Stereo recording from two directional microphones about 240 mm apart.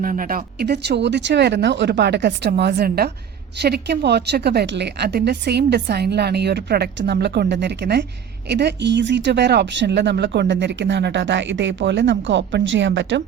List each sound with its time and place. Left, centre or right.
0.0 s speech: right